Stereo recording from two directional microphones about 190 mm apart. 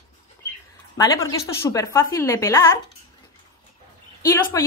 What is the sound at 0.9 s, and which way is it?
Speech, 15° left (ahead or behind).